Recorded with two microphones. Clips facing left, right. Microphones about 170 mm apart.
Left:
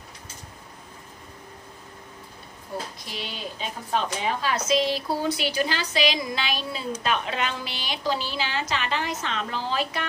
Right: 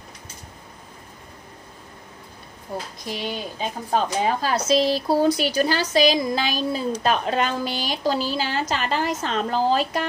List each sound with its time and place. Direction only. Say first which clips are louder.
3.1 s a woman's voice: right 6 dB; 45° right (ahead or behind)